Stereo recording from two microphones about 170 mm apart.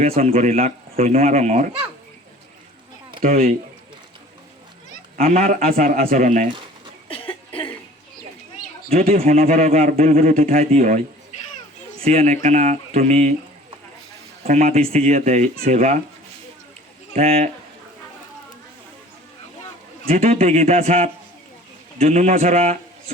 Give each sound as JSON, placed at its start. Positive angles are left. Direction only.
{"t": 0.0, "sound": "speech", "side_deg": -35}
{"t": 3.2, "sound": "speech", "side_deg": -55}
{"t": 5.1, "sound": "speech", "side_deg": -50}
{"t": 7.1, "sound": "a sound", "side_deg": 30}
{"t": 9.0, "sound": "a man's voice", "side_deg": -60}
{"t": 10.7, "sound": "speech", "side_deg": -40}
{"t": 14.4, "sound": "speech", "side_deg": -40}
{"t": 17.2, "sound": "speech", "side_deg": -40}
{"t": 20.1, "sound": "speech", "side_deg": -35}